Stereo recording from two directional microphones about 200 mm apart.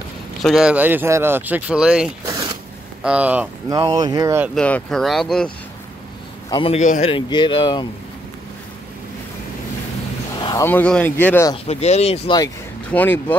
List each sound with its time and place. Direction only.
0.4 s speech: centre (ahead or behind)
2.2 s zipper: 20° right (ahead or behind)
3.0 s speech: 5° right (ahead or behind)
3.8 s speech: 20° right (ahead or behind)
4.6 s speech: 5° left (ahead or behind)
6.5 s a man's voice: 30° left (ahead or behind)
10.4 s speech: 15° left (ahead or behind)
11.5 s speech: 30° left (ahead or behind)
12.9 s speech: 10° left (ahead or behind)